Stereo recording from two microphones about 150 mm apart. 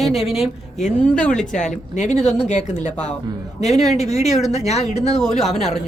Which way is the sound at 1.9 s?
50° left (ahead or behind).